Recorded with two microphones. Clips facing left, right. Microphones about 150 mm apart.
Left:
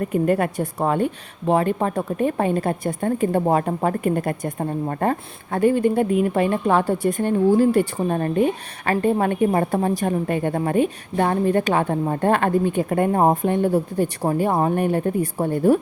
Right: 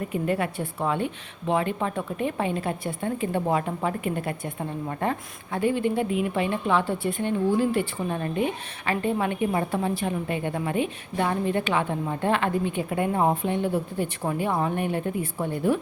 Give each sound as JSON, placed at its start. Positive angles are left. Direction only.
{"t": 0.0, "sound": "a woman's voice", "side_deg": 45}